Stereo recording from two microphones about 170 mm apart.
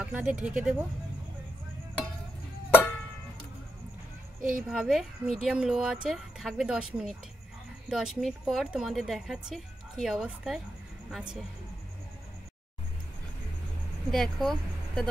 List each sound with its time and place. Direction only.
0.0 s speech: 5° right (ahead or behind)
4.4 s a woman's voice: 50° right (ahead or behind)
4.6 s speech: 5° right (ahead or behind)
14.1 s speech: centre (ahead or behind)